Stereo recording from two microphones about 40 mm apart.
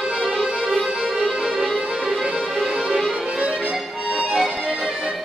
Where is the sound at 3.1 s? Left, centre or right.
Right.